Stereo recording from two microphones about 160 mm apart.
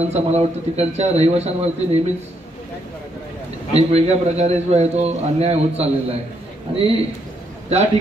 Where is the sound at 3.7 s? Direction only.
40° right (ahead or behind).